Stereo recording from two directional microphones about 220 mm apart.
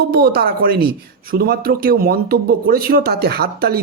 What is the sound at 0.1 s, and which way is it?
Speech, 45° right (ahead or behind).